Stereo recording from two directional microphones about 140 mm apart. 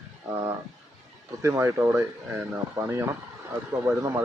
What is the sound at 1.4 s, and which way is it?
Speech, 20° right (ahead or behind).